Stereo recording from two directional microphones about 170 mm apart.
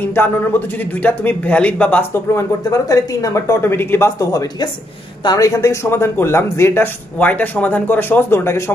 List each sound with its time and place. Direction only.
0.0 s a man's voice: 10° left (ahead or behind)